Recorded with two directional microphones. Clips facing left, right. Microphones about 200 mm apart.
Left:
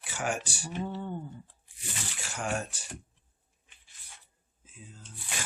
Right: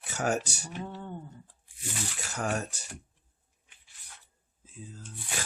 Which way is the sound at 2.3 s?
40° right (ahead or behind).